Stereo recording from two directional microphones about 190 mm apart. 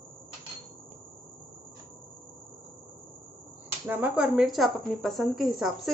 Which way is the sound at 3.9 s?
10° right (ahead or behind).